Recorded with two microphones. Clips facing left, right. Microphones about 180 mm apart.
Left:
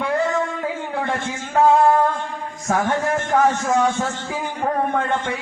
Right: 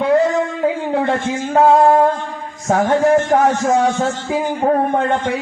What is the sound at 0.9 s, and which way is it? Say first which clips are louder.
Music: right 7 dB; 30° right (ahead or behind).